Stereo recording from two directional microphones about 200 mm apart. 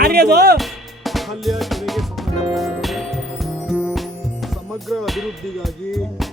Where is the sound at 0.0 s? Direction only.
50° right (ahead or behind).